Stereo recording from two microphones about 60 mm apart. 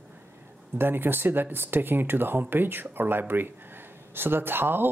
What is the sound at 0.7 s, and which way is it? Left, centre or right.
Speech, right.